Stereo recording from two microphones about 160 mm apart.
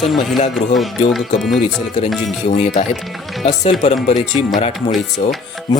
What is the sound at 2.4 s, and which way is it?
Speech, 45° left (ahead or behind).